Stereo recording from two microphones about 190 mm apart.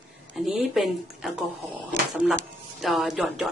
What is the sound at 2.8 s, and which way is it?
Speech, centre (ahead or behind).